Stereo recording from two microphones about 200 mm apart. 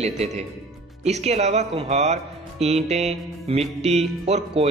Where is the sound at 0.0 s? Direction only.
30° right (ahead or behind).